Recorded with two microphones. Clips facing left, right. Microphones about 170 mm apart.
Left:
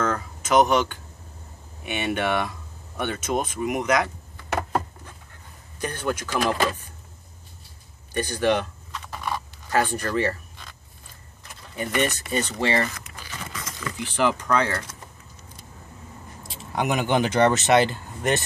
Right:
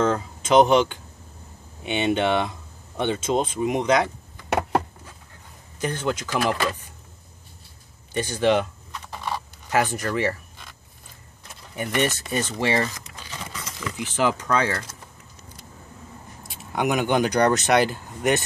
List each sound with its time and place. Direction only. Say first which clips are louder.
0.0 s speech: right 4 dB; 25° right (ahead or behind)
4.5 s a sound: right 3 dB; 70° right (ahead or behind)
5.8 s speech: right 2 dB; 20° right (ahead or behind)
8.2 s speech: right 1 dB; 20° right (ahead or behind)
9.1 s a sound: even; 20° right (ahead or behind)
9.8 s speech: even; 15° right (ahead or behind)
11.7 s speech: right 1 dB; 15° right (ahead or behind)
13.8 s speech: even; 10° right (ahead or behind)
16.7 s speech: right 1 dB; centre (ahead or behind)